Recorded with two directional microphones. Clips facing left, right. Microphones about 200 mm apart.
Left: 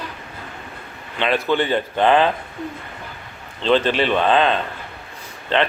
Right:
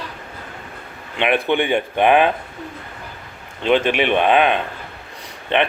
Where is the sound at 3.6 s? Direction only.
15° right (ahead or behind).